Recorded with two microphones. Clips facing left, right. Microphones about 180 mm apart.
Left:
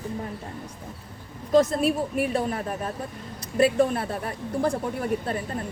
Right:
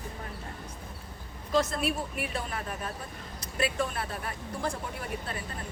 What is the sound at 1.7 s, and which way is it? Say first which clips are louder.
A woman's voice: left 7 dB; 40° left (ahead or behind).